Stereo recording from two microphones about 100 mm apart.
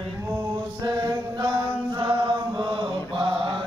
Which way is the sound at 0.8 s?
45° right (ahead or behind).